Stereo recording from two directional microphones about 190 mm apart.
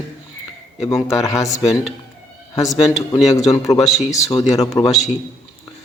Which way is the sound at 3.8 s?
Centre (ahead or behind).